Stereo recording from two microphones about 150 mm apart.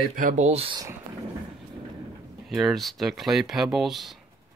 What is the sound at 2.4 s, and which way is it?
Speech, centre (ahead or behind).